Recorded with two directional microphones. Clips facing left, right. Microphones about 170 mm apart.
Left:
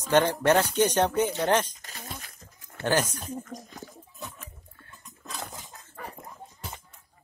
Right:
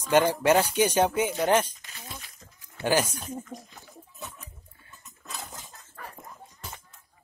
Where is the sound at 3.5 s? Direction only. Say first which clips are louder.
Left 2 dB; 40° left (ahead or behind).